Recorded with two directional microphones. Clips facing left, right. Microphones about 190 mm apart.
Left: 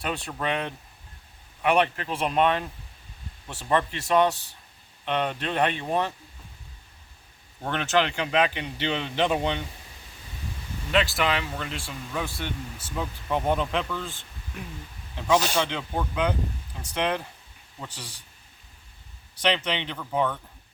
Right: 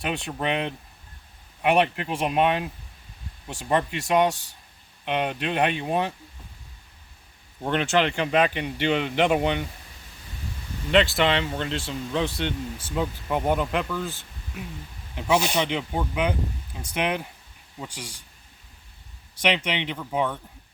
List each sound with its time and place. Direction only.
0.0 s speech: 15° right (ahead or behind)
7.6 s speech: 15° right (ahead or behind)
11.2 s speech: 25° right (ahead or behind); by 14.1 s 5° right (ahead or behind)
15.1 s speech: 15° right (ahead or behind)
19.4 s speech: 15° right (ahead or behind)